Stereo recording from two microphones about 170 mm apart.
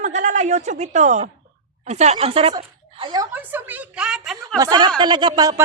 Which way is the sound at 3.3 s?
10° right (ahead or behind).